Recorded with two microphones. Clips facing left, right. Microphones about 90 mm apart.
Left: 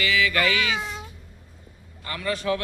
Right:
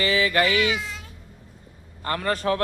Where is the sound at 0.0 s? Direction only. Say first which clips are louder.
Right 2 dB; 35° right (ahead or behind).